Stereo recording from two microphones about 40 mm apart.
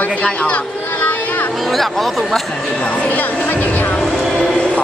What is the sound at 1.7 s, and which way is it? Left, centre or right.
Speech, centre.